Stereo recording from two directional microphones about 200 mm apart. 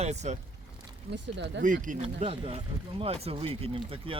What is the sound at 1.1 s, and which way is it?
Speech, 60° right (ahead or behind).